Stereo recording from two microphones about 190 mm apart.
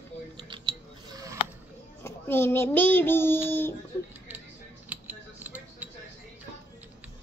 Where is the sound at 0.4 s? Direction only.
25° right (ahead or behind).